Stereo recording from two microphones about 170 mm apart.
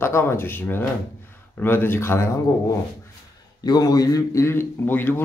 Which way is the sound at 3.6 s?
25° left (ahead or behind).